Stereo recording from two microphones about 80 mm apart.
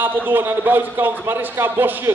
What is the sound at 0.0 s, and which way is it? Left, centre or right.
Speech, right.